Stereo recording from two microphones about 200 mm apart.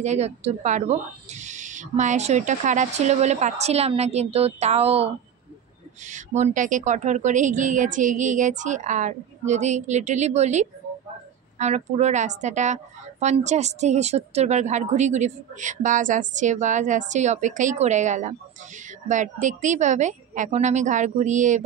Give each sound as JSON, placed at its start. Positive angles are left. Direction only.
{"t": 0.0, "sound": "a woman's voice", "side_deg": -35}